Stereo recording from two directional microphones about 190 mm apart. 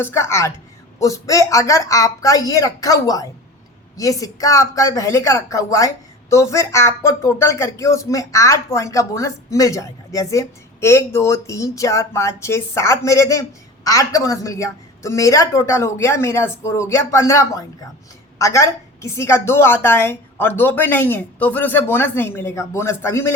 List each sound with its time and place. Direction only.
0.0 s speech: 15° left (ahead or behind)